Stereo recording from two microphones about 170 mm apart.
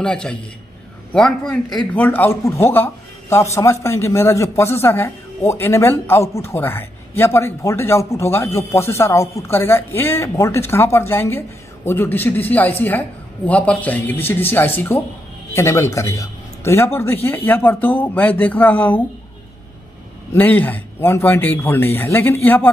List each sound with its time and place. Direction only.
0.0 s a man's voice: 5° left (ahead or behind)
20.3 s a man's voice: 10° left (ahead or behind)